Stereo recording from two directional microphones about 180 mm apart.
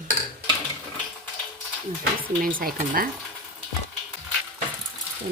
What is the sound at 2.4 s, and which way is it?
Speech, 50° right (ahead or behind).